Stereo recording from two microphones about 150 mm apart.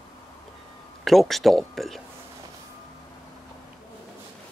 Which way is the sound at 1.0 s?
Centre (ahead or behind).